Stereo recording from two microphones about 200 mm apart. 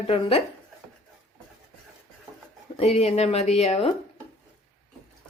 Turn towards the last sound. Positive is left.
turn(degrees=30)  # may be behind; listen again after turning